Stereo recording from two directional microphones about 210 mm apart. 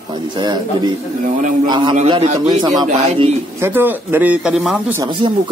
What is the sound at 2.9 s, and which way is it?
Speech, 30° right (ahead or behind).